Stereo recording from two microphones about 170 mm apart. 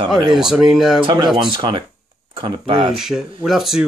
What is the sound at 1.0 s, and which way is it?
Speech, 25° right (ahead or behind).